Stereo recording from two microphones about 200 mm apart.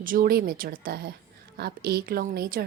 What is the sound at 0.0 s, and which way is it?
A woman's voice, 45° right (ahead or behind).